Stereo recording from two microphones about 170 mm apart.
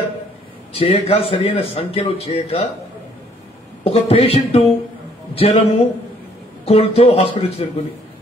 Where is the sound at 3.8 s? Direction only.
35° left (ahead or behind).